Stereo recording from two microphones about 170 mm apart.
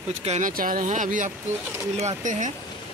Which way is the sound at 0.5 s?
55° right (ahead or behind).